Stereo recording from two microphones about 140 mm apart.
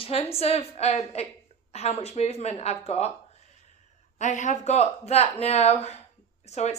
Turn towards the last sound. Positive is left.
turn(degrees=50)  # may be behind; listen again after turning